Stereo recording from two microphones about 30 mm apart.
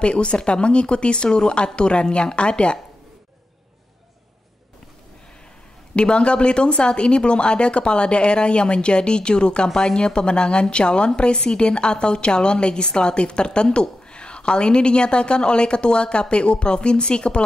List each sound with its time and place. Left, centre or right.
0.0 s a woman's voice: left
5.9 s a woman's voice: left